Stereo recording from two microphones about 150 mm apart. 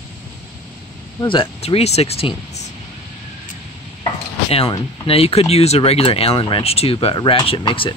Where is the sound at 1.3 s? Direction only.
35° left (ahead or behind).